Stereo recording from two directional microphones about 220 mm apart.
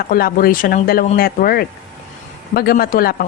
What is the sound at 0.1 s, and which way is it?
Speech, 40° left (ahead or behind).